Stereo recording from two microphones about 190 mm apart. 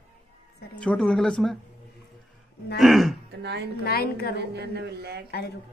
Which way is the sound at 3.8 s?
55° left (ahead or behind).